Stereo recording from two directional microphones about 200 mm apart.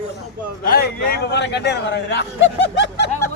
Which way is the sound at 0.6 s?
50° left (ahead or behind).